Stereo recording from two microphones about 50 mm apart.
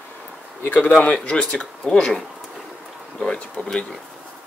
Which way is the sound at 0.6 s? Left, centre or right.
Left.